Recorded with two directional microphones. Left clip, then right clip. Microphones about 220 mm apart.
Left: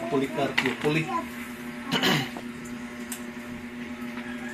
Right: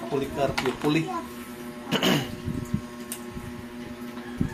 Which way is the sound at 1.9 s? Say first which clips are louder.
Even; 45° right (ahead or behind).